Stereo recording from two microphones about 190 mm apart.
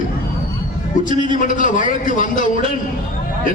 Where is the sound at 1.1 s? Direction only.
45° left (ahead or behind).